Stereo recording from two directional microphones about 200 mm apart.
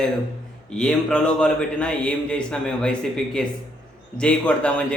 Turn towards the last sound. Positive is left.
turn(degrees=5)  # may be behind; listen again after turning